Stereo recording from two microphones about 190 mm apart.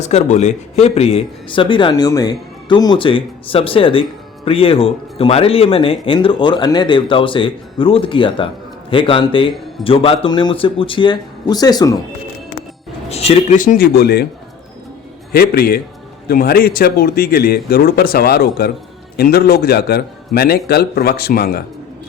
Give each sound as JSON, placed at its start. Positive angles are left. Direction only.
{"t": 0.0, "sound": "speech", "side_deg": 35}
{"t": 13.1, "sound": "speech", "side_deg": 30}
{"t": 13.6, "sound": "speech", "side_deg": 50}
{"t": 15.3, "sound": "a man's voice", "side_deg": 55}